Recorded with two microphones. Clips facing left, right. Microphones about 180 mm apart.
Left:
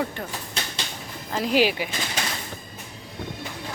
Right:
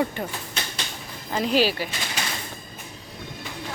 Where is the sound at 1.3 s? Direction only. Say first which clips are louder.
Right 1 dB; centre (ahead or behind).